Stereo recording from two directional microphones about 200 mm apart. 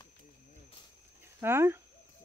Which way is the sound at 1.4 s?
10° right (ahead or behind).